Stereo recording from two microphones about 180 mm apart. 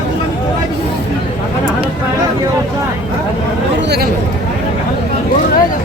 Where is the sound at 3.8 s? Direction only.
65° right (ahead or behind).